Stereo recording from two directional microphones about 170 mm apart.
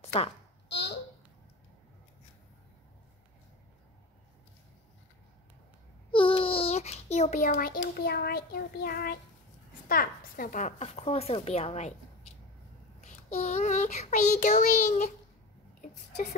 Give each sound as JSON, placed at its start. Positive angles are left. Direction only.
{"t": 0.0, "sound": "a sound", "side_deg": 35}
{"t": 0.7, "sound": "a child's voice", "side_deg": 90}
{"t": 6.1, "sound": "a child's voice", "side_deg": 30}
{"t": 13.0, "sound": "child singing", "side_deg": 45}